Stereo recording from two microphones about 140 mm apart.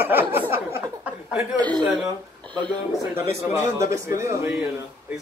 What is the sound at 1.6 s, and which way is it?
Laughter, 30° right (ahead or behind).